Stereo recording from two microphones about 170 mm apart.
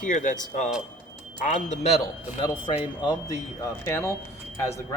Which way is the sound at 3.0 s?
20° left (ahead or behind).